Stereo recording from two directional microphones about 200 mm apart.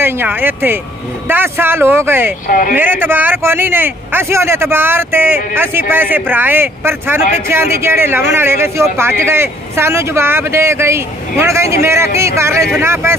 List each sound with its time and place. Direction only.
0.0 s speech: 10° right (ahead or behind)
2.4 s speech: 40° left (ahead or behind)
2.7 s speech: 10° right (ahead or behind)